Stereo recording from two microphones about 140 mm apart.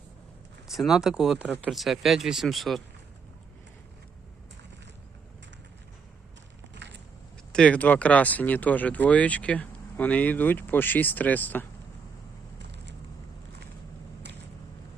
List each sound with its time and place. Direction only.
0.7 s speech: centre (ahead or behind)
7.5 s speech: 10° left (ahead or behind)